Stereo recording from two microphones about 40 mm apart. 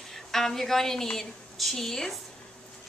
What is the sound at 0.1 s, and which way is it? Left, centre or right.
A woman's voice, centre.